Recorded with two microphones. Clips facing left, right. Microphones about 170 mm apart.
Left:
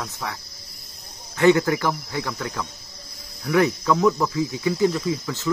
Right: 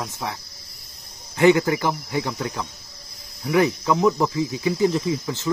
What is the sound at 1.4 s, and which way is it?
Speech, 20° right (ahead or behind).